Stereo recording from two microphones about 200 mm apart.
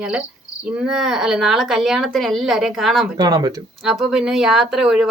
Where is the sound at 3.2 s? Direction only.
15° right (ahead or behind).